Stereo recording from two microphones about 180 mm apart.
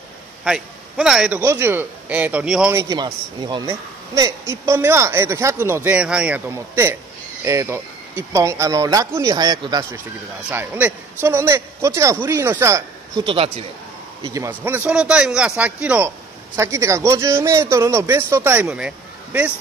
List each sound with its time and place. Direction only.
0.4 s a man's voice: centre (ahead or behind)
1.4 s a man's voice: 15° right (ahead or behind)
10.5 s a man's voice: 10° right (ahead or behind); by 13.7 s 30° right (ahead or behind)
14.2 s a man's voice: 15° right (ahead or behind)